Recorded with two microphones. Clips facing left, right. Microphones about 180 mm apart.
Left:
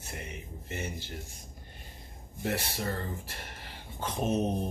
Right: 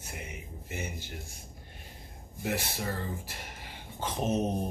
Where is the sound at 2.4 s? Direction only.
10° right (ahead or behind).